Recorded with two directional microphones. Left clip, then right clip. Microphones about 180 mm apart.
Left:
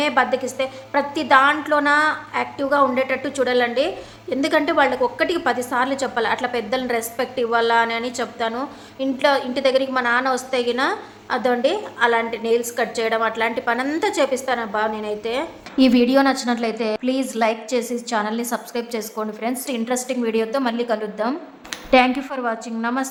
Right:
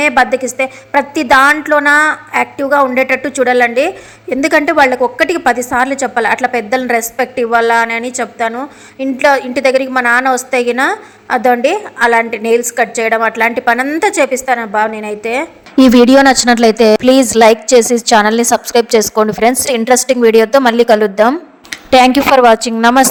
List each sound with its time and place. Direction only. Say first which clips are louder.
0.0 s a woman's voice: right 8 dB; 35° right (ahead or behind)
15.7 s a woman's voice: right 10 dB; 50° right (ahead or behind)